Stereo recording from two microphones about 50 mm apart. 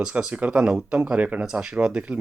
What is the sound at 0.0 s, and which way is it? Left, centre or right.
Speech, centre.